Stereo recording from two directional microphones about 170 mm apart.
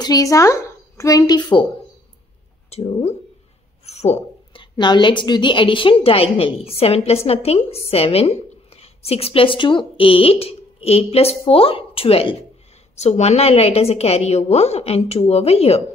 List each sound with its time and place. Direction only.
0.0 s speech: 20° left (ahead or behind)
2.7 s a woman's voice: 35° left (ahead or behind)
3.8 s a sound: 40° left (ahead or behind)
4.7 s a woman's voice: 25° left (ahead or behind)